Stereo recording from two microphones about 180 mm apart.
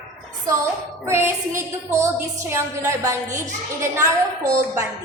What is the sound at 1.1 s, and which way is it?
A woman's voice, 15° right (ahead or behind).